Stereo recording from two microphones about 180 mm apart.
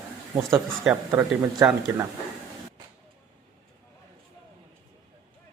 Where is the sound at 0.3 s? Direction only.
5° right (ahead or behind); by 2.0 s 20° right (ahead or behind).